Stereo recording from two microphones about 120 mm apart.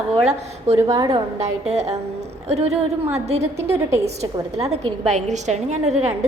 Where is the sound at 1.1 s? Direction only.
65° right (ahead or behind).